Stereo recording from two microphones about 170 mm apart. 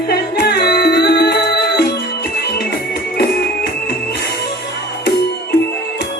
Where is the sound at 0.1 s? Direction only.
70° left (ahead or behind).